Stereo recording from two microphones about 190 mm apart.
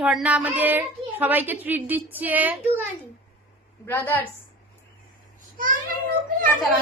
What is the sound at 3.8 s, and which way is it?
Speech, 10° left (ahead or behind).